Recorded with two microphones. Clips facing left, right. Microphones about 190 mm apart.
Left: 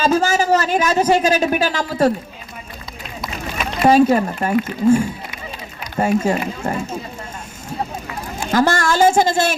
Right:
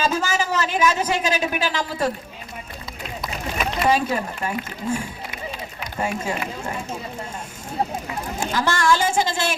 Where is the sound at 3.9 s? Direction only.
45° left (ahead or behind).